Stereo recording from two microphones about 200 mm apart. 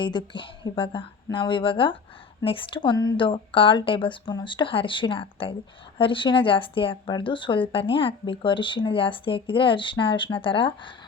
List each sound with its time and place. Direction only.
0.0 s speech: 20° left (ahead or behind)